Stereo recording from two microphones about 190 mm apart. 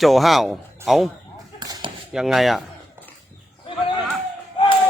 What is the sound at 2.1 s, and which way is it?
Speech, centre (ahead or behind).